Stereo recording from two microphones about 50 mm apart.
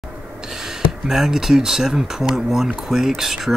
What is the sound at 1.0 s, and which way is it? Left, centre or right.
Speech, centre.